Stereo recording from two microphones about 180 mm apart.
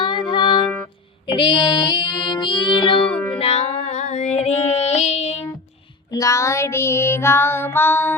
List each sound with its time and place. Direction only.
0.0 s music: 25° left (ahead or behind)
3.1 s music: 10° left (ahead or behind)
3.3 s music: 35° left (ahead or behind)
6.1 s child singing: 20° left (ahead or behind)